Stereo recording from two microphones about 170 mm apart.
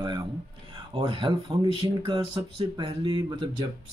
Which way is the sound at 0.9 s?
30° right (ahead or behind).